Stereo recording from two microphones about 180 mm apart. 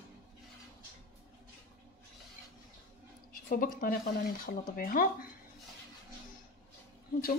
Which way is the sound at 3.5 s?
50° left (ahead or behind).